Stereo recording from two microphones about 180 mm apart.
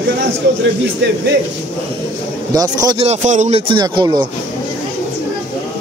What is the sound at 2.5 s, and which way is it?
Speech, 20° right (ahead or behind).